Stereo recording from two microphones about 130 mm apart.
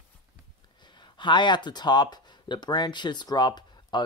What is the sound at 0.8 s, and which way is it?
Speech, 35° left (ahead or behind).